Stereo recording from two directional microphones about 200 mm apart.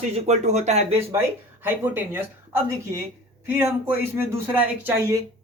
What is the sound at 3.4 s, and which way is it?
Speech, 10° right (ahead or behind).